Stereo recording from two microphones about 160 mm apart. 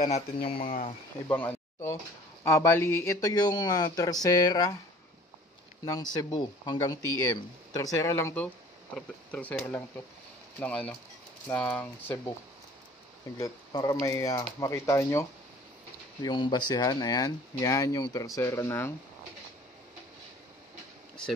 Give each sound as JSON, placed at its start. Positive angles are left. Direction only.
{"t": 0.5, "sound": "speech", "side_deg": 35}
{"t": 1.3, "sound": "speech", "side_deg": 10}
{"t": 6.1, "sound": "speech", "side_deg": 25}
{"t": 13.4, "sound": "speech", "side_deg": 25}
{"t": 16.2, "sound": "speech", "side_deg": 30}